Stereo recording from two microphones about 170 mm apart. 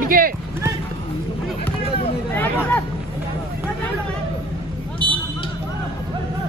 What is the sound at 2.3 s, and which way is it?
Hubbub, 10° left (ahead or behind).